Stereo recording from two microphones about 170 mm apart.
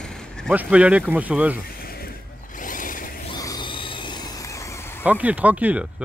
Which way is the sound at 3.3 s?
25° left (ahead or behind).